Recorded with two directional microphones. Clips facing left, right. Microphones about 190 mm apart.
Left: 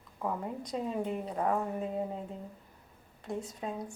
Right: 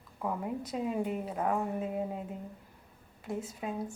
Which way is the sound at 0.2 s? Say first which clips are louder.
Right 1 dB; 5° right (ahead or behind).